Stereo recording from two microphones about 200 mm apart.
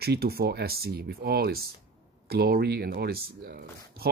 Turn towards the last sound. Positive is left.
turn(degrees=-50)  # may be behind; listen again after turning